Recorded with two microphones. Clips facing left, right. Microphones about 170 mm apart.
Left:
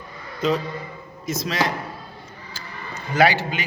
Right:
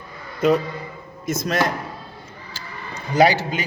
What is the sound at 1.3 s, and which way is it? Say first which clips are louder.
Speech: right 2 dB; 50° right (ahead or behind).